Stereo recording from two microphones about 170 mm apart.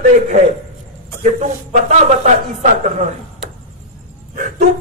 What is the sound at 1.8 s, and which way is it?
Speech, 40° right (ahead or behind).